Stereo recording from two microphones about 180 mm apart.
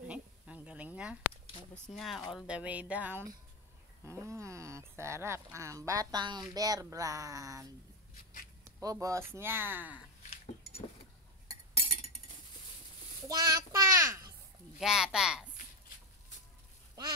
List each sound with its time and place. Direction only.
0.1 s a sound: 5° right (ahead or behind)
2.0 s speech: centre (ahead or behind); by 7.6 s 20° right (ahead or behind)
8.6 s speech: 15° right (ahead or behind)
11.4 s chink: 30° left (ahead or behind)
13.3 s child singing: 20° right (ahead or behind)
14.8 s speech: 5° right (ahead or behind)